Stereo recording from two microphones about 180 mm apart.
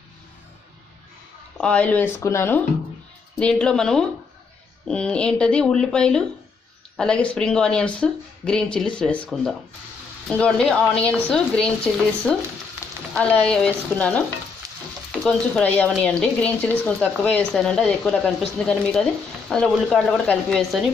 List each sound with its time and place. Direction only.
1.6 s stir: 5° left (ahead or behind)
3.3 s speech: 5° left (ahead or behind)
13.1 s stir: 5° left (ahead or behind)
14.6 s frying: 20° right (ahead or behind)
15.2 s speech: 5° left (ahead or behind)